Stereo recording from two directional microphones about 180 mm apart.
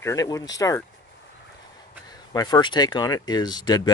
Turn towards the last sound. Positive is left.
turn(degrees=25)  # may be behind; listen again after turning